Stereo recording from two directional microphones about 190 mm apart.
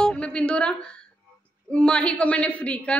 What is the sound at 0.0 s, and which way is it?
A woman's voice, 5° left (ahead or behind).